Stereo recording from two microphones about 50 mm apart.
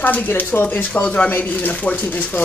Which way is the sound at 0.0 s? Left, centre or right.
Left.